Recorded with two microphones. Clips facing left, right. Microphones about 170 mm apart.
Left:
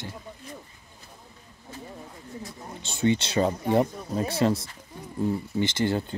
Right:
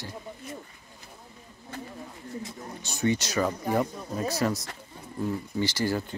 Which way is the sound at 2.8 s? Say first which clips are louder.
Left 3 dB; 25° left (ahead or behind).